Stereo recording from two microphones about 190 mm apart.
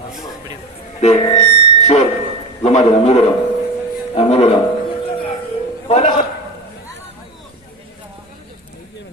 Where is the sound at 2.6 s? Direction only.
35° left (ahead or behind).